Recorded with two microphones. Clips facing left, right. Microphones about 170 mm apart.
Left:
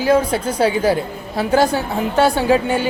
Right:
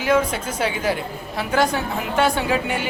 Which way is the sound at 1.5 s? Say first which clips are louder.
Left 4 dB; 30° left (ahead or behind).